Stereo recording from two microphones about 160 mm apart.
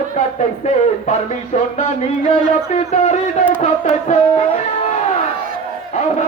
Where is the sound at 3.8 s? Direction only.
40° left (ahead or behind).